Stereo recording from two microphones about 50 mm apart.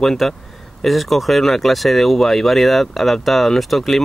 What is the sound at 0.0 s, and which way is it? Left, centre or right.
Speech, centre.